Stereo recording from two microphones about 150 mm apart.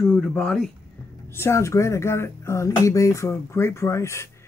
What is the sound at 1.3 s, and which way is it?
Speech, 15° left (ahead or behind).